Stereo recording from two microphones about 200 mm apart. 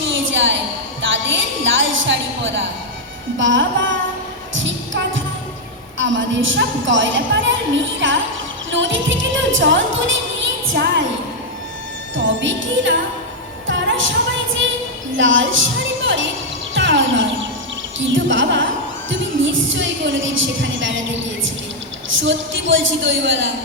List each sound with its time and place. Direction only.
0.0 s a sound: 65° right (ahead or behind)
1.0 s a woman's voice: 70° right (ahead or behind)
4.5 s a sound: 70° right (ahead or behind)
6.0 s a woman's voice: 70° right (ahead or behind)
8.7 s music: 70° right (ahead or behind)
10.7 s a woman's voice: 60° right (ahead or behind)
12.1 s a woman's voice: 70° right (ahead or behind)
13.7 s music: 70° right (ahead or behind)
15.1 s a woman's voice: 70° right (ahead or behind)
16.7 s music: 65° right (ahead or behind)
18.0 s a woman's voice: 65° right (ahead or behind)